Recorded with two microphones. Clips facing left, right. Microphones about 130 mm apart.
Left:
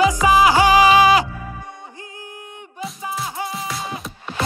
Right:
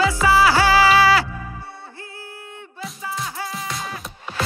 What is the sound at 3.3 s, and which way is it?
Music, 25° left (ahead or behind).